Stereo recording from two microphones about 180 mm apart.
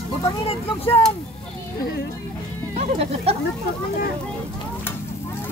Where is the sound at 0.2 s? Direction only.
30° left (ahead or behind).